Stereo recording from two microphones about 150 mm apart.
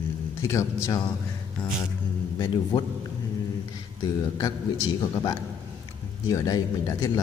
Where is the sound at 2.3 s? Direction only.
30° left (ahead or behind).